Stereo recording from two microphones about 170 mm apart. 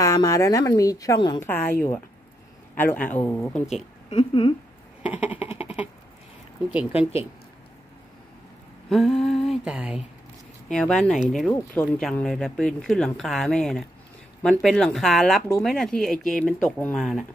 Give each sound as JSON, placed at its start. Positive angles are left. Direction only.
{"t": 0.0, "sound": "a woman's voice", "side_deg": 20}
{"t": 2.7, "sound": "a man's voice", "side_deg": 10}
{"t": 4.1, "sound": "speech", "side_deg": 30}
{"t": 5.4, "sound": "a sound", "side_deg": 35}
{"t": 6.7, "sound": "speech", "side_deg": -10}
{"t": 7.0, "sound": "speech", "side_deg": 35}
{"t": 8.8, "sound": "a sound", "side_deg": 0}
{"t": 10.7, "sound": "speech", "side_deg": 5}